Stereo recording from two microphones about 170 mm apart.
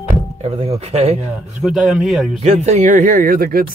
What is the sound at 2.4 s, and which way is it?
Speech, 40° right (ahead or behind).